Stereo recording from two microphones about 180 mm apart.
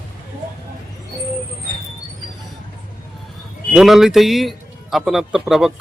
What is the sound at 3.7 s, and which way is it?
Speech, 5° right (ahead or behind).